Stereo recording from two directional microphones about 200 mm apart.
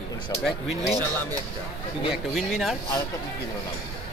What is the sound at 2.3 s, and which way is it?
Speech, centre (ahead or behind).